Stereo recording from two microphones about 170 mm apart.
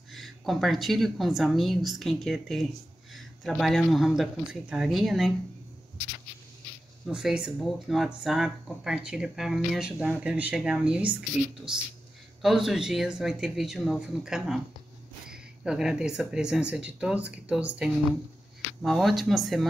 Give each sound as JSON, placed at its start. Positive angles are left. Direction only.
{"t": 0.1, "sound": "speech", "side_deg": 0}
{"t": 7.1, "sound": "speech", "side_deg": -5}
{"t": 18.8, "sound": "speech", "side_deg": 0}